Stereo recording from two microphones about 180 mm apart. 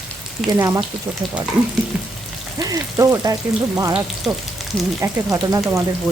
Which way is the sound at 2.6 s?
20° right (ahead or behind).